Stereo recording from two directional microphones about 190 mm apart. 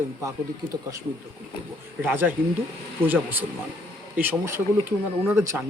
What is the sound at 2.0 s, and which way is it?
Speech, 10° right (ahead or behind).